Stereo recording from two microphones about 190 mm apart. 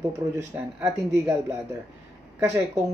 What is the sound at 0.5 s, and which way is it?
Speech, 10° right (ahead or behind).